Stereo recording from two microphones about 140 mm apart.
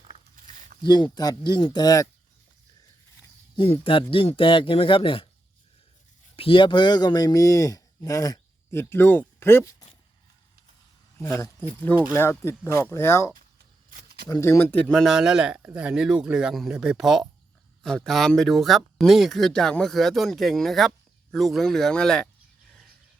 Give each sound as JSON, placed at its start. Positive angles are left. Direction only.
{"t": 0.8, "sound": "speech", "side_deg": 30}
{"t": 3.5, "sound": "speech", "side_deg": 35}
{"t": 6.3, "sound": "speech", "side_deg": 40}
{"t": 11.2, "sound": "speech", "side_deg": 20}